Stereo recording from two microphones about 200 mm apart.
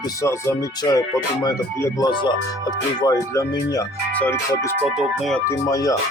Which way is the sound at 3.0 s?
15° left (ahead or behind).